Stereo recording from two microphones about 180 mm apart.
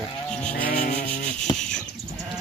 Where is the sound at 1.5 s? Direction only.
25° left (ahead or behind).